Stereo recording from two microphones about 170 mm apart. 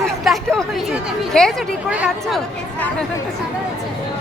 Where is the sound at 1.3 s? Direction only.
5° left (ahead or behind).